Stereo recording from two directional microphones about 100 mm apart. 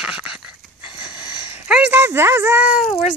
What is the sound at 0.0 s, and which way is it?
Dog, 10° right (ahead or behind).